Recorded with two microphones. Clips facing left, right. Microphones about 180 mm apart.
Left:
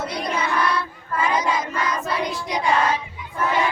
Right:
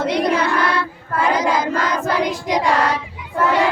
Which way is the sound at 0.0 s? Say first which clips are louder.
Right 8 dB; 80° right.